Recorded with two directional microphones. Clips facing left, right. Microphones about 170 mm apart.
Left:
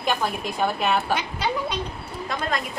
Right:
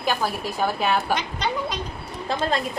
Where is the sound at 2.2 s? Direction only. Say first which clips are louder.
Right 3 dB; 30° right (ahead or behind).